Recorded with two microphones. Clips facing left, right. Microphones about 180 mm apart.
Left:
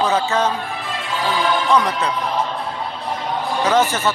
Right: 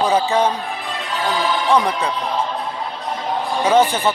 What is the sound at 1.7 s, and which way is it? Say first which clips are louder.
Speech: right 3 dB; 10° right (ahead or behind).